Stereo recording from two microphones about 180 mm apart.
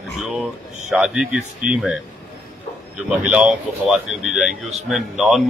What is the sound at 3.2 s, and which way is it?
Speech, 5° right (ahead or behind).